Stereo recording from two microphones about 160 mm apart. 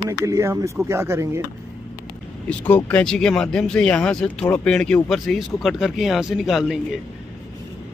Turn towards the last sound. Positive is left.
turn(degrees=0)  # may be behind; listen again after turning